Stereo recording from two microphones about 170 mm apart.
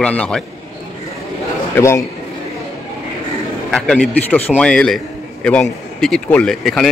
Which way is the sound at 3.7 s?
5° left (ahead or behind).